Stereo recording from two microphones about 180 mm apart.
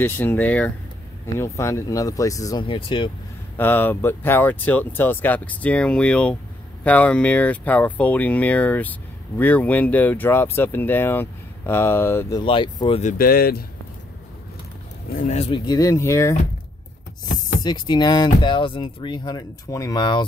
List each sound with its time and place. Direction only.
0.0 s speech: 10° left (ahead or behind); by 3.1 s 30° left (ahead or behind)
3.5 s speech: 10° left (ahead or behind)
12.4 s speech: 25° left (ahead or behind)
13.0 s speech: 55° left (ahead or behind)
15.1 s speech: 40° left (ahead or behind); by 16.3 s 15° left (ahead or behind)
17.6 s speech: 25° left (ahead or behind)